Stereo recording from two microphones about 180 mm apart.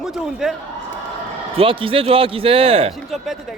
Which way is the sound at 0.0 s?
Centre (ahead or behind).